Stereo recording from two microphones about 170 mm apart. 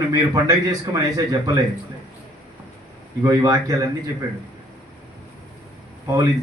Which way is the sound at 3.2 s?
20° right (ahead or behind).